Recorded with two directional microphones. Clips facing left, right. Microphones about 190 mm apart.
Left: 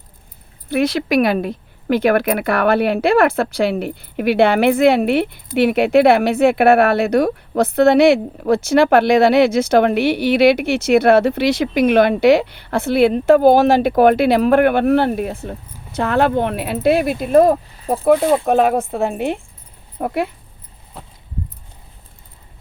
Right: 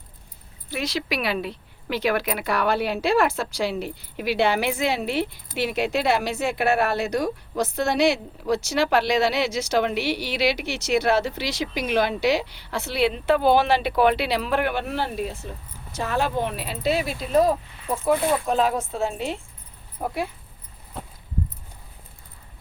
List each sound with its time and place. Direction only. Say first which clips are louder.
0.7 s speech: left 11 dB; 55° left (ahead or behind)
17.7 s a sound: left 7 dB; 35° left (ahead or behind)
18.4 s speech: left 7 dB; 60° left (ahead or behind)